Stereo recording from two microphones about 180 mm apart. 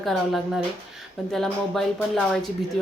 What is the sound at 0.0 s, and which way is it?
A woman's voice, centre (ahead or behind).